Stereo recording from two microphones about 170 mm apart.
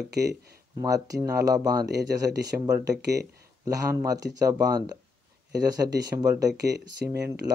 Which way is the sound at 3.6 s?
20° right (ahead or behind).